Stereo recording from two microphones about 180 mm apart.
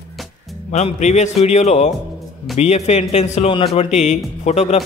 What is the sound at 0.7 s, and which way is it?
A man's voice, 40° left (ahead or behind).